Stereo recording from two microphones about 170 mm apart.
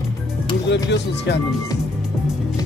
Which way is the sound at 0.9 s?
90° left.